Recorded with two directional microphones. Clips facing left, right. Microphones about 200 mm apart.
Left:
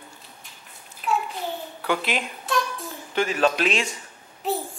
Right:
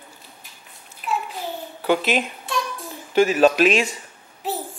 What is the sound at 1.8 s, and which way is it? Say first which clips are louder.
Speech: right 6 dB; 20° right (ahead or behind).